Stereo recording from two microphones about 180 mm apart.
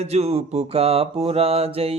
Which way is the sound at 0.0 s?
35° right (ahead or behind).